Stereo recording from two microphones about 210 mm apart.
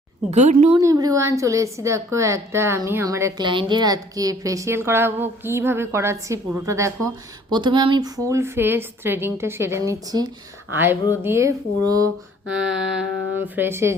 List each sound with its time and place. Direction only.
0.3 s speech: 35° right (ahead or behind)
0.8 s a woman's voice: 15° right (ahead or behind)
12.5 s a woman's voice: 5° right (ahead or behind)